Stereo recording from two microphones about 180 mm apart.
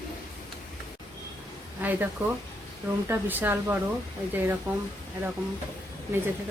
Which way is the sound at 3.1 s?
10° right (ahead or behind).